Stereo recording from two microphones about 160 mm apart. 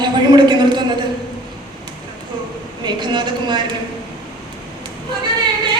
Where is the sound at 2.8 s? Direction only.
30° right (ahead or behind).